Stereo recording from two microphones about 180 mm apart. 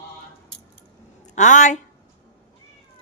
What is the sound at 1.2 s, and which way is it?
Speech, 40° left (ahead or behind).